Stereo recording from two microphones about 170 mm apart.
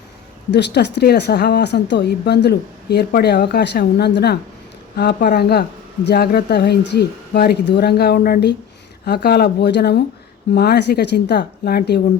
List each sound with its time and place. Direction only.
0.5 s a woman's voice: 85° left; by 11.9 s 70° left (ahead or behind)